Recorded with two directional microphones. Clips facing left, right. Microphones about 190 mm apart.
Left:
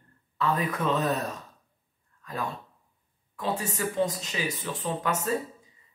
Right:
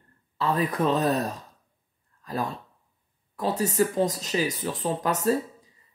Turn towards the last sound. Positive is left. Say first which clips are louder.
# right 4 dB
turn(degrees=-35)  # may be behind; listen again after turning